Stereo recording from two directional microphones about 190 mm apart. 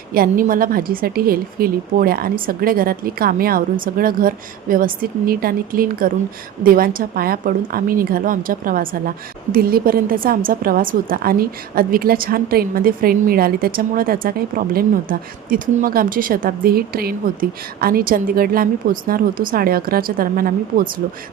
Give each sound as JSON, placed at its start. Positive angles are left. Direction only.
{"t": 0.1, "sound": "speech", "side_deg": -50}